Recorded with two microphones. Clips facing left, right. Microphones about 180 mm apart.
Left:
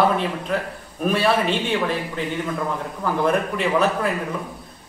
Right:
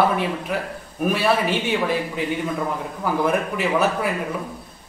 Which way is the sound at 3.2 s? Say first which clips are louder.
Left 2 dB; 5° right (ahead or behind).